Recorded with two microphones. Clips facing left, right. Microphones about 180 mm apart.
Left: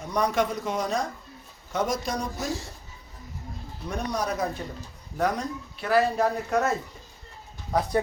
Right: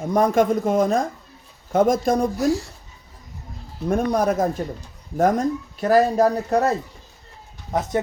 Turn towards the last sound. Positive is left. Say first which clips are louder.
# right 2 dB
turn(degrees=-20)  # may be behind; listen again after turning